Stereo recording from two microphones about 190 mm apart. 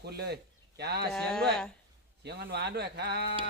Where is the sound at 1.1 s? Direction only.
5° left (ahead or behind).